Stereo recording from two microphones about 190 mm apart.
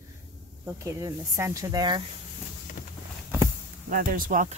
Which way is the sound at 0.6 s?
15° right (ahead or behind).